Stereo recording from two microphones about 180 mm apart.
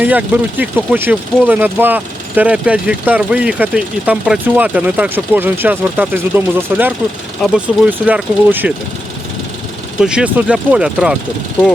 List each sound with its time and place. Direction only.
0.0 s speech: 10° right (ahead or behind)
10.0 s speech: 5° right (ahead or behind)